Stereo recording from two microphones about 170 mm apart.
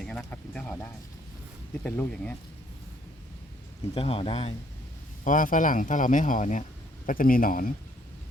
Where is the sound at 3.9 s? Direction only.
35° left (ahead or behind).